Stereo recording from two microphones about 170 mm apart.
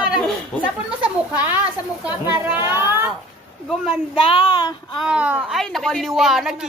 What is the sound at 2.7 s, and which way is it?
Speech, 15° right (ahead or behind).